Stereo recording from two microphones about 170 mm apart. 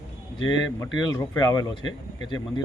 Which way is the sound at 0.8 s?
20° left (ahead or behind).